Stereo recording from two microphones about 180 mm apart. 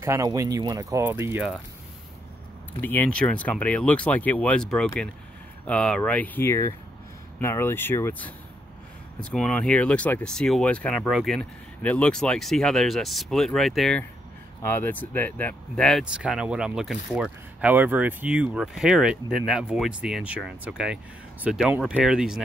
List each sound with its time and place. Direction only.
0.0 s speech: 20° right (ahead or behind)
2.8 s speech: 10° left (ahead or behind)
14.6 s speech: 10° left (ahead or behind); by 22.4 s 5° right (ahead or behind)